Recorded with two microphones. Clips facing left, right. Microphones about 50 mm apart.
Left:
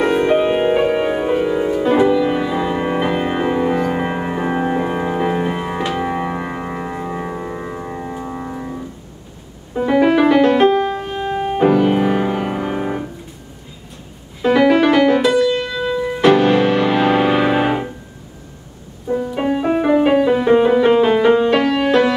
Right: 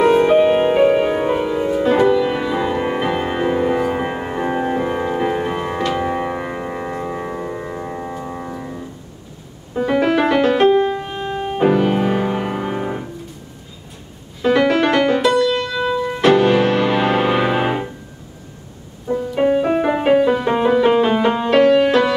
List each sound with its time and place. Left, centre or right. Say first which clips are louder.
0.0 s music: right 3 dB; centre
14.4 s music: left 2 dB; centre
19.3 s music: right 3 dB; centre